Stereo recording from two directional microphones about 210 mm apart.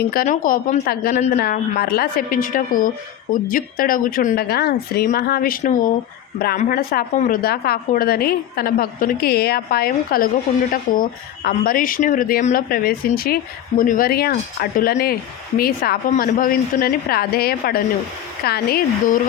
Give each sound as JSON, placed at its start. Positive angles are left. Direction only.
{"t": 0.0, "sound": "a woman's voice", "side_deg": 45}